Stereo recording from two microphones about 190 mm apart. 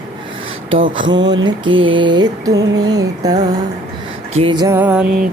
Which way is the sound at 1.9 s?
25° right (ahead or behind).